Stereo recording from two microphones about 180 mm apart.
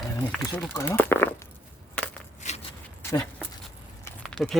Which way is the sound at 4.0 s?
5° left (ahead or behind).